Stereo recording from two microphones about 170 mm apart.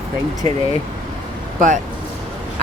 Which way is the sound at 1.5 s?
50° right (ahead or behind).